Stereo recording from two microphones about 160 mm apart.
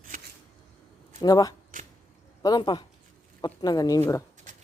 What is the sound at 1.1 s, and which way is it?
Speech, 25° left (ahead or behind).